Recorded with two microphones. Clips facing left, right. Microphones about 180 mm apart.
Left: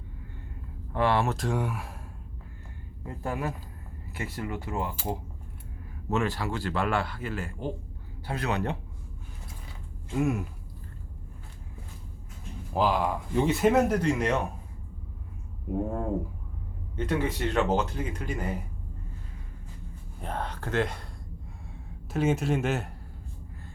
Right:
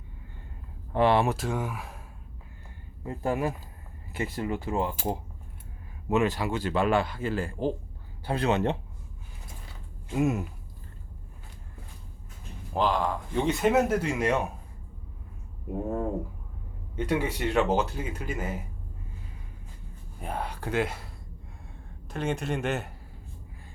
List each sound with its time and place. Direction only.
0.9 s speech: 20° right (ahead or behind)
1.4 s speech: centre (ahead or behind)
3.1 s speech: 25° right (ahead or behind)
6.1 s speech: 15° right (ahead or behind)
10.2 s speech: 20° right (ahead or behind)
12.7 s speech: 5° left (ahead or behind)
16.9 s speech: 10° right (ahead or behind)
20.2 s speech: 10° right (ahead or behind)
22.1 s speech: 5° left (ahead or behind)